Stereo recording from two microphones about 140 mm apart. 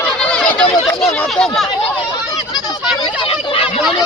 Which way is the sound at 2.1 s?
30° left (ahead or behind).